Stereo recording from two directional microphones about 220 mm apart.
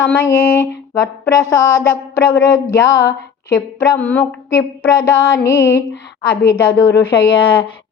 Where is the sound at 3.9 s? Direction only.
10° left (ahead or behind).